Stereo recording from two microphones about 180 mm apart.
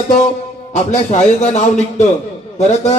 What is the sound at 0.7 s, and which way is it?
Speech, 40° left (ahead or behind).